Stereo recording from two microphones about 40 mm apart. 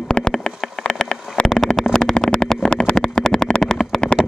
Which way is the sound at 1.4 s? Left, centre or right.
Centre.